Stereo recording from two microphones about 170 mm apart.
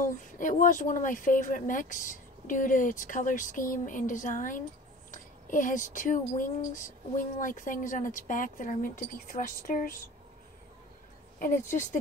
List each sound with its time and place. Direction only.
0.0 s speech: 50° left (ahead or behind)
11.3 s speech: 50° left (ahead or behind)